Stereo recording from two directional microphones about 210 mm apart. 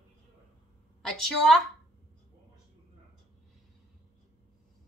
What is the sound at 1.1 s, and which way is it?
Speech, 5° left (ahead or behind).